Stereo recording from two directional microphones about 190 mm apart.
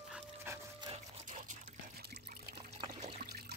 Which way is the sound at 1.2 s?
40° right (ahead or behind).